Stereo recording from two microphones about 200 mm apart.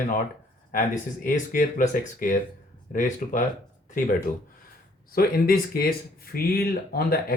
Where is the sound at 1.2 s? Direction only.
40° left (ahead or behind).